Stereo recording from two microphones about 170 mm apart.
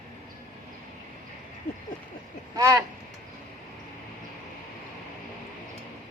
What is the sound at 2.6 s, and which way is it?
Speech, 20° right (ahead or behind).